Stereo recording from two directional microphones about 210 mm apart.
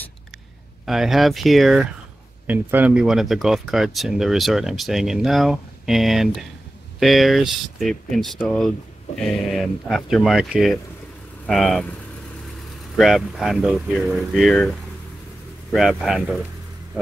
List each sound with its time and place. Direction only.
0.8 s speech: centre (ahead or behind)
12.9 s speech: centre (ahead or behind)